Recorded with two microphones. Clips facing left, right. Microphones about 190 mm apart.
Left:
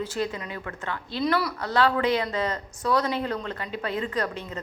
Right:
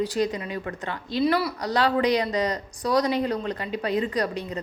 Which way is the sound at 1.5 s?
15° right (ahead or behind).